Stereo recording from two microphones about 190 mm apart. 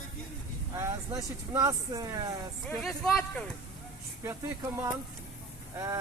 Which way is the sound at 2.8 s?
Centre (ahead or behind).